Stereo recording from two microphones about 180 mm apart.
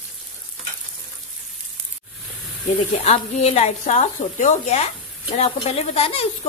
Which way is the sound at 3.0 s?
35° left (ahead or behind).